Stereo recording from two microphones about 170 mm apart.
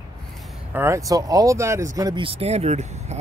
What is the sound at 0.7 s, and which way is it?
Speech, 15° right (ahead or behind).